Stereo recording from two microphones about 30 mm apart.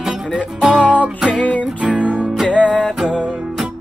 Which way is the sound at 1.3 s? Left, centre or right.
Left.